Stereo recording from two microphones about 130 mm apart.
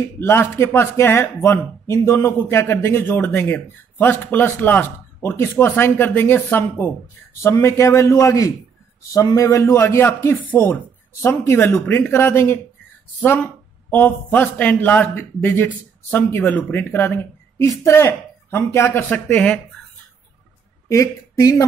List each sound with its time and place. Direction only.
0.2 s a man's voice: 20° left (ahead or behind)
20.9 s a man's voice: 25° left (ahead or behind)